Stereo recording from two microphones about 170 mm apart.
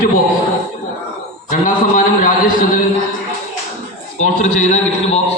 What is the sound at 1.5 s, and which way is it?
Speech, 50° left (ahead or behind).